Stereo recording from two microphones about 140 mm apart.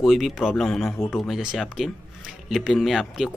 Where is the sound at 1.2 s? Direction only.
Centre (ahead or behind).